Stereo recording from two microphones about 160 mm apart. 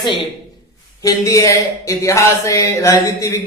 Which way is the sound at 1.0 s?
20° left (ahead or behind).